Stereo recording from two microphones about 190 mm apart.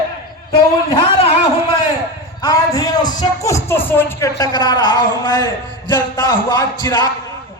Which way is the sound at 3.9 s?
10° left (ahead or behind).